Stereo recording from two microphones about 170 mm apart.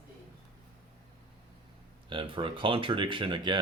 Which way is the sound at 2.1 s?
30° right (ahead or behind).